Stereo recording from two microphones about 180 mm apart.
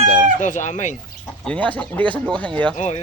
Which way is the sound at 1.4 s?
5° left (ahead or behind).